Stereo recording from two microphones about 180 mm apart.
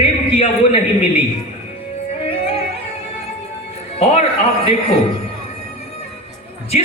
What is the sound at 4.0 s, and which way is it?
Speech, 35° left (ahead or behind).